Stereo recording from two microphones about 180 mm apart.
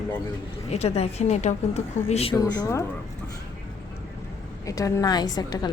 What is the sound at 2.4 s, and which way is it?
Speech, 20° left (ahead or behind).